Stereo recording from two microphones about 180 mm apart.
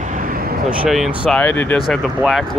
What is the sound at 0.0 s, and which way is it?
Vehicle, 45° right (ahead or behind).